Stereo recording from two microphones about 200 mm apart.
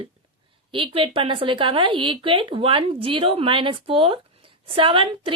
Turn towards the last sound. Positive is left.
turn(degrees=-25)  # may be behind; listen again after turning